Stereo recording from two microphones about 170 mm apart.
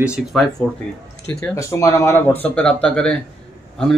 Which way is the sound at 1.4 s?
15° left (ahead or behind).